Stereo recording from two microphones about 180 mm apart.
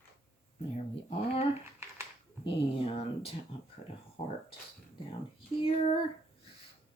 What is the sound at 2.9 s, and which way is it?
Speech, 30° left (ahead or behind).